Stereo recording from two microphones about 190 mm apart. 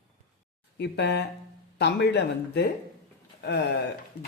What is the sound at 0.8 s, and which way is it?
A woman's voice, 60° left (ahead or behind).